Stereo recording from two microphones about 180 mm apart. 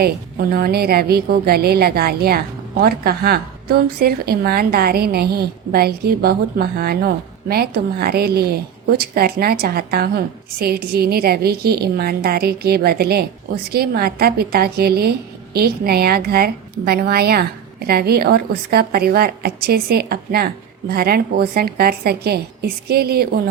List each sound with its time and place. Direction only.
0.0 s a woman's voice: 60° right (ahead or behind)